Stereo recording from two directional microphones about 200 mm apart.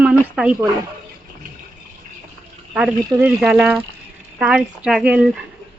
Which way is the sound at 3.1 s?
15° right (ahead or behind).